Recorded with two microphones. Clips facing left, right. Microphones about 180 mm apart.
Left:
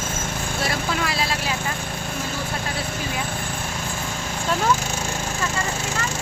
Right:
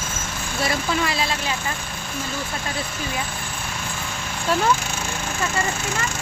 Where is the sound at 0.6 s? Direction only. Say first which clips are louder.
Right 3 dB; centre (ahead or behind).